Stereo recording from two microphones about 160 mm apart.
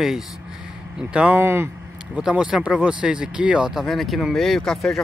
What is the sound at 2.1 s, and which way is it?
Speech, 5° right (ahead or behind).